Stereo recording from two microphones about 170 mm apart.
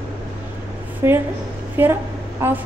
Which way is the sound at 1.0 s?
15° right (ahead or behind).